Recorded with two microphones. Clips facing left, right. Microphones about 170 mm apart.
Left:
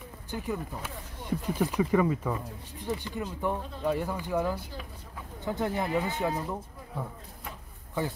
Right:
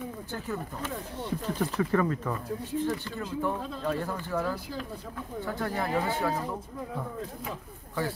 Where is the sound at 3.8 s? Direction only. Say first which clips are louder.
Left 3 dB; 15° left (ahead or behind).